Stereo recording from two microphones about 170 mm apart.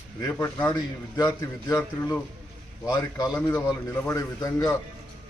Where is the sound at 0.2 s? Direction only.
15° left (ahead or behind).